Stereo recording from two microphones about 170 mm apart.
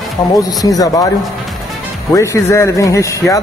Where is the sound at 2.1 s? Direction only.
20° left (ahead or behind).